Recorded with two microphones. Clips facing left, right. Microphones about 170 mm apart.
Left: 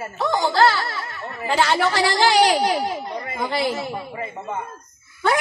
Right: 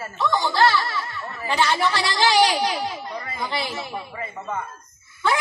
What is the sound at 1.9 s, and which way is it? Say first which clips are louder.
Speech: left 3 dB; 60° left (ahead or behind).